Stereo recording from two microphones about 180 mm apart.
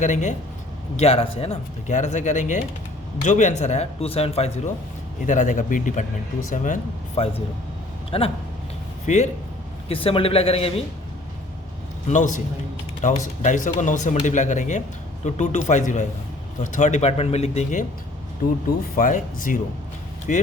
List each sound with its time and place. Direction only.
0.0 s speech: 40° left (ahead or behind)
7.2 s speech: 35° left (ahead or behind)
12.0 s speech: 45° left (ahead or behind)
18.9 s speech: 50° left (ahead or behind)